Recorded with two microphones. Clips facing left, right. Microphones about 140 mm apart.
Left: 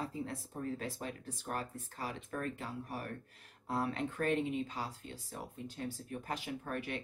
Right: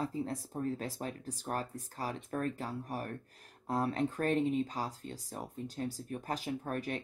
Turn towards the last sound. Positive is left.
turn(degrees=-40)  # may be behind; listen again after turning